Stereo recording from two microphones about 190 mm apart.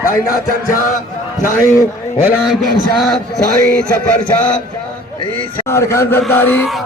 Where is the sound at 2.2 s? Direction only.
Centre (ahead or behind).